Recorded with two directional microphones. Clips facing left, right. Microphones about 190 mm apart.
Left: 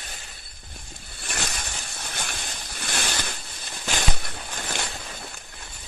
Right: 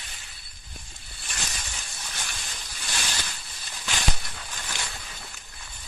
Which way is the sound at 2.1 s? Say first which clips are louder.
Left 6 dB; 60° left (ahead or behind).